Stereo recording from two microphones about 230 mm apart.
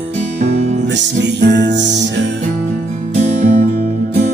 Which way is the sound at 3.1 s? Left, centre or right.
Right.